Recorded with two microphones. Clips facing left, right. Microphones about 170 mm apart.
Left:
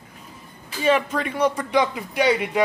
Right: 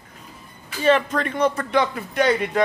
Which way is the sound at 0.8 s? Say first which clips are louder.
Right 2 dB; 10° left (ahead or behind).